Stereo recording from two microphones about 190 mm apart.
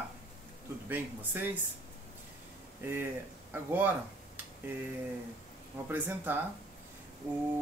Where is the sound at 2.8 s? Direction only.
10° right (ahead or behind).